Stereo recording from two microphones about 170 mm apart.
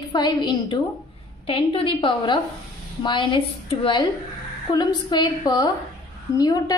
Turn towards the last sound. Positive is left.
turn(degrees=25)  # may be behind; listen again after turning